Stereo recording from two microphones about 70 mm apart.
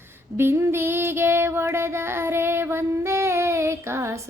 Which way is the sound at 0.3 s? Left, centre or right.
Right.